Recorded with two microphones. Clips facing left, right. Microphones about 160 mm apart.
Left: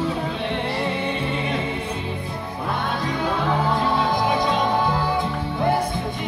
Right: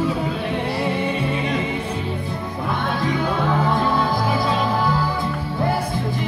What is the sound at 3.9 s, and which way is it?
Music, 5° right (ahead or behind).